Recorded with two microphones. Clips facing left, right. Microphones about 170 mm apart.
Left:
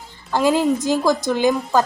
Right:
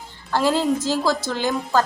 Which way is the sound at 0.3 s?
15° left (ahead or behind).